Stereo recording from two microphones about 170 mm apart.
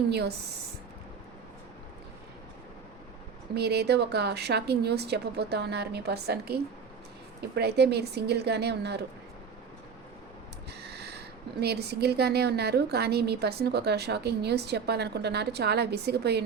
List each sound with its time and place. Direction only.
0.1 s a woman's voice: 75° right (ahead or behind)
3.5 s a woman's voice: 70° right (ahead or behind)
10.9 s a sound: 75° right (ahead or behind)
11.6 s a woman's voice: 70° right (ahead or behind)